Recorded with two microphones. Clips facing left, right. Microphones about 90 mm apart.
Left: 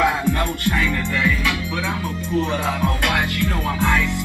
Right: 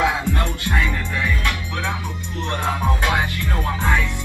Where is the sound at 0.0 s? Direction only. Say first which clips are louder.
Left 2 dB; 50° left (ahead or behind).